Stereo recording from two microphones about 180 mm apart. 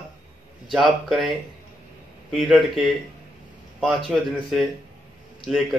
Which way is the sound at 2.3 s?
Centre (ahead or behind).